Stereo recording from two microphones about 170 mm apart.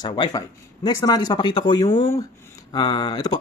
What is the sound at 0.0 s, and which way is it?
Speech, 25° left (ahead or behind).